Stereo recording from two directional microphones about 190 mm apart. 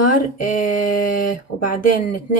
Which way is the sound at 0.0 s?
45° left (ahead or behind).